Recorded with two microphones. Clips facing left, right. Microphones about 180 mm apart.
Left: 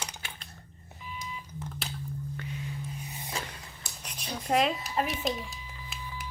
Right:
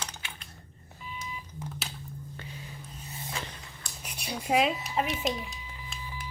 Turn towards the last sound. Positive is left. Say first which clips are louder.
# even
turn(degrees=0)  # may be behind; listen again after turning